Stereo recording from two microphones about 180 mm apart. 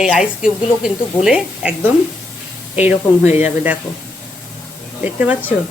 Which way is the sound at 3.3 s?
40° left (ahead or behind).